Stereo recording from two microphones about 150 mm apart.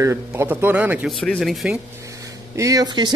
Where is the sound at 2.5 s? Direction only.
25° right (ahead or behind).